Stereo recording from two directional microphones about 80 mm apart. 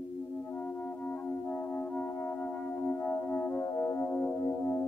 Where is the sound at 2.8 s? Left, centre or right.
Left.